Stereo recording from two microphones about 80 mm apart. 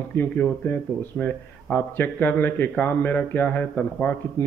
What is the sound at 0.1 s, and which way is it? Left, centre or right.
Speech, left.